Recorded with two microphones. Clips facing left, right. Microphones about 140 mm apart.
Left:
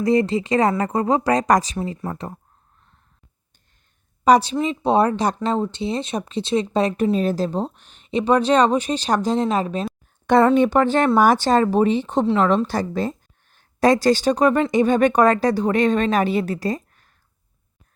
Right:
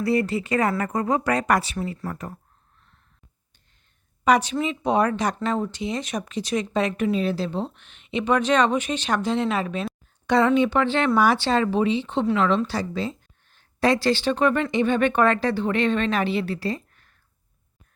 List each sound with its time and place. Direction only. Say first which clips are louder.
0.0 s speech: left 4 dB; 30° left (ahead or behind)
1.8 s speech: left 3 dB; 25° left (ahead or behind)
4.2 s a woman's voice: left 4 dB; 35° left (ahead or behind)
10.2 s speech: left 4 dB; 50° left (ahead or behind)
12.2 s speech: left 3 dB; 30° left (ahead or behind)
12.5 s a woman's voice: left 3 dB; 50° left (ahead or behind)